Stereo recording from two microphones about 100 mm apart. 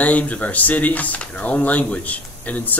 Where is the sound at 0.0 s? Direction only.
15° left (ahead or behind).